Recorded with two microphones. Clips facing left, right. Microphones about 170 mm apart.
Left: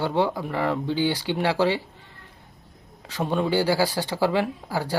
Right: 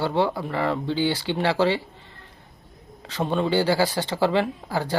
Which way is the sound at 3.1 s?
10° left (ahead or behind).